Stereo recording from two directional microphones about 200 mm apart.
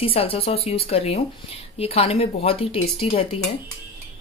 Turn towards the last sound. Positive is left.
turn(degrees=30)  # may be behind; listen again after turning